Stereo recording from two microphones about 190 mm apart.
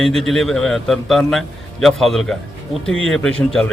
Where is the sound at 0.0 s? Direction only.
Centre (ahead or behind).